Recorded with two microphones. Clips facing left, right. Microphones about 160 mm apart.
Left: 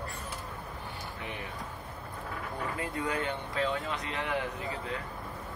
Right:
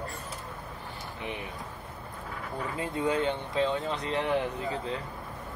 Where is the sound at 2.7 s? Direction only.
25° right (ahead or behind).